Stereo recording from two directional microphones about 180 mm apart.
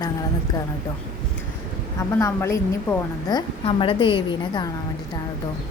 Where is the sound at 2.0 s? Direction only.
15° left (ahead or behind).